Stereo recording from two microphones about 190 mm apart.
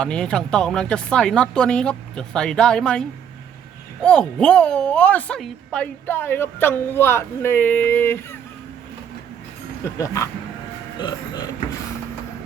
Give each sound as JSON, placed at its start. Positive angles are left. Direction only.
{"t": 0.0, "sound": "a woman's voice", "side_deg": 5}
{"t": 9.8, "sound": "a woman's voice", "side_deg": 15}